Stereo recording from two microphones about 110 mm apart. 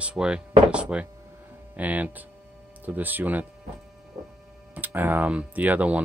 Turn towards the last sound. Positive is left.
turn(degrees=-15)  # may be behind; listen again after turning